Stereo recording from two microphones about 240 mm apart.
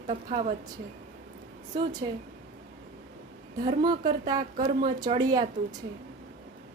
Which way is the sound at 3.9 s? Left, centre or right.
Centre.